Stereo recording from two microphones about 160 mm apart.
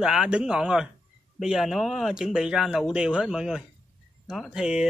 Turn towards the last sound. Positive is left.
turn(degrees=-5)  # may be behind; listen again after turning